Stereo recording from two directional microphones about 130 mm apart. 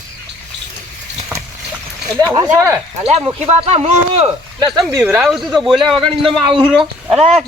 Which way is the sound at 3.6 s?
50° right (ahead or behind).